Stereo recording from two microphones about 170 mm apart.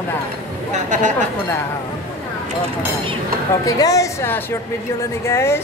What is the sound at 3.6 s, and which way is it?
A woman's voice, 20° left (ahead or behind).